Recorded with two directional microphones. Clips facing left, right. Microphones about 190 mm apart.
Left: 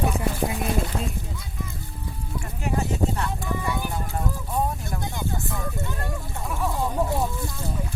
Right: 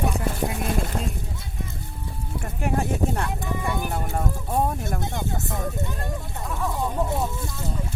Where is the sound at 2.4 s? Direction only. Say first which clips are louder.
Right 2 dB; 55° right (ahead or behind).